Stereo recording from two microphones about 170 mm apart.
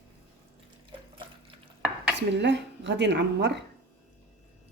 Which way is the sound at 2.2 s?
90° right.